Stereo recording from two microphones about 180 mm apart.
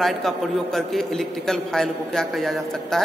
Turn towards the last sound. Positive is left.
turn(degrees=0)  # may be behind; listen again after turning